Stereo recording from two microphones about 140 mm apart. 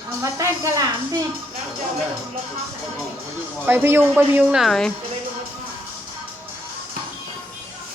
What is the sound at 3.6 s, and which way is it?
Speech, 15° right (ahead or behind).